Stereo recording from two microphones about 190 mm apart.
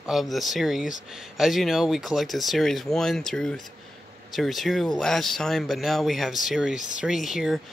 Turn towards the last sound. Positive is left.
turn(degrees=0)  # may be behind; listen again after turning